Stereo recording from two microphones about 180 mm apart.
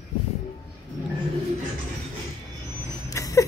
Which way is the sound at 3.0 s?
20° left (ahead or behind).